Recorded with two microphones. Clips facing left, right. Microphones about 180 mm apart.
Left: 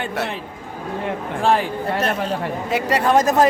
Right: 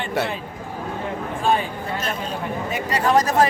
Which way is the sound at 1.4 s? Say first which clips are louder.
Left 3 dB; 75° left (ahead or behind).